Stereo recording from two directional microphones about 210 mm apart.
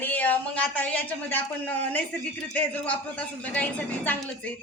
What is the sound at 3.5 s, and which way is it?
Speech, 5° left (ahead or behind).